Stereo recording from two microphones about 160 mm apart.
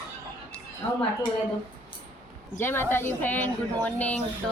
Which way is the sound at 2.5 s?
15° left (ahead or behind).